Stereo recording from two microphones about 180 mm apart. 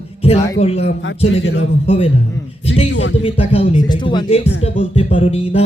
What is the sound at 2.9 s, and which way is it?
Speech, 90° left.